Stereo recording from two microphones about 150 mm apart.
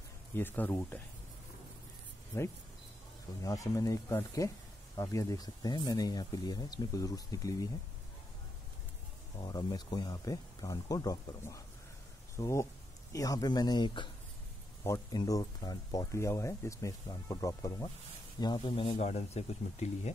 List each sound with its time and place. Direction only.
0.3 s speech: 15° left (ahead or behind)
3.4 s speech: 20° left (ahead or behind)
9.4 s speech: 30° left (ahead or behind)
18.4 s speech: 35° left (ahead or behind)